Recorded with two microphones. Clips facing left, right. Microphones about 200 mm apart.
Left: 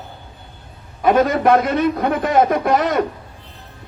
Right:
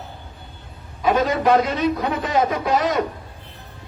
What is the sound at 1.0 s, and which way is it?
A man's voice, 55° left (ahead or behind).